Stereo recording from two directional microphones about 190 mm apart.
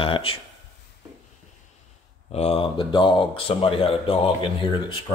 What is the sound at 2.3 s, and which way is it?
Speech, 35° left (ahead or behind).